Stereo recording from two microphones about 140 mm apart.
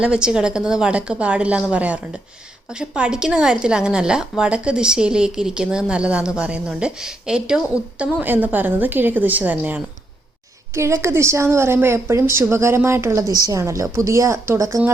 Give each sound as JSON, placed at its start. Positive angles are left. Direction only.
{"t": 0.0, "sound": "a woman's voice", "side_deg": -5}